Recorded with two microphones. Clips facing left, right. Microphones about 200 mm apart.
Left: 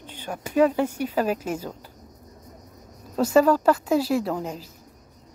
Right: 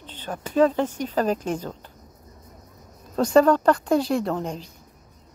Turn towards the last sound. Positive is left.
turn(degrees=5)  # may be behind; listen again after turning